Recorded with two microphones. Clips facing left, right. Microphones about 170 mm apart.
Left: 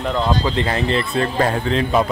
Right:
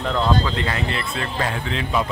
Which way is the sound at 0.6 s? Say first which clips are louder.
Left 6 dB; 30° left (ahead or behind).